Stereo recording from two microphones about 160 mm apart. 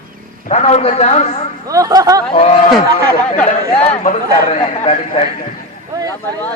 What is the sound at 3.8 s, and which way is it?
A man's voice, 40° left (ahead or behind).